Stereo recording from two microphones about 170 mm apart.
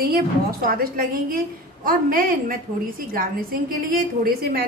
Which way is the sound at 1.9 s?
55° right (ahead or behind).